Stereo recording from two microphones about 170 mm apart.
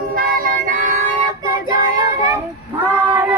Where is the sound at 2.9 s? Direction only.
15° right (ahead or behind).